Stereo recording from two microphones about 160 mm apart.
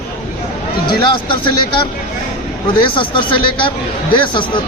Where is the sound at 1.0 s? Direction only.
30° left (ahead or behind).